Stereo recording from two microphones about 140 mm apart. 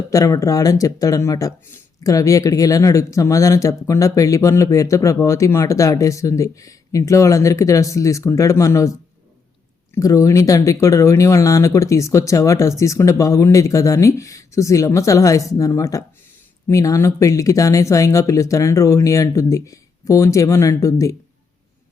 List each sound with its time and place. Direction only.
0.1 s speech: 25° left (ahead or behind)